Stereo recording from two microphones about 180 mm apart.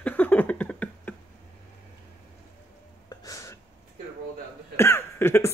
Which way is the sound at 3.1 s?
20° left (ahead or behind).